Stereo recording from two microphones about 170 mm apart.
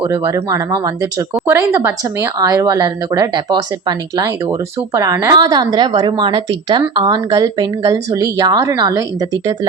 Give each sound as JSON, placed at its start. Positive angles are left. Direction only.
{"t": 0.1, "sound": "a woman's voice", "side_deg": -15}